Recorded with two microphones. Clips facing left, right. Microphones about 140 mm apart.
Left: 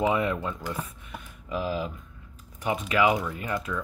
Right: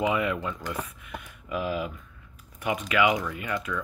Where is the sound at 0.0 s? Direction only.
35° left (ahead or behind).